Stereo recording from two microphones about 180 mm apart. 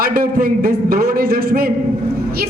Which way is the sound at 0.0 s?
55° right (ahead or behind).